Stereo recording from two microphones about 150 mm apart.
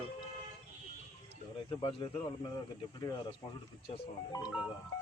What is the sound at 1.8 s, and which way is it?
Speech, 35° left (ahead or behind).